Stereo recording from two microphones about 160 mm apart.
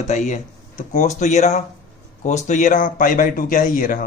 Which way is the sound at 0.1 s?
50° left (ahead or behind).